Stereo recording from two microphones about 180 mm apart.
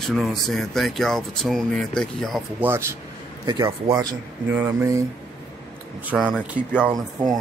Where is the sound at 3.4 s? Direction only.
25° right (ahead or behind).